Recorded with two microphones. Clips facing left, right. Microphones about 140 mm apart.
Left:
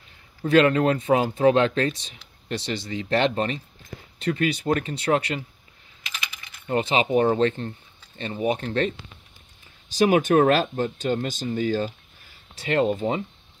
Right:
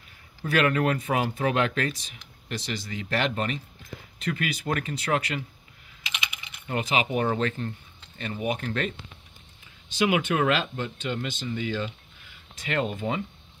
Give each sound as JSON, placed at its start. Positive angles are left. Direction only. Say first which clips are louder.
{"t": 0.4, "sound": "speech", "louder": "left 6 dB", "side_deg": 25}
{"t": 6.1, "sound": "typing", "louder": "right 1 dB", "side_deg": -20}
{"t": 6.7, "sound": "speech", "louder": "left 5 dB", "side_deg": 30}
{"t": 9.9, "sound": "speech", "louder": "left 6 dB", "side_deg": 40}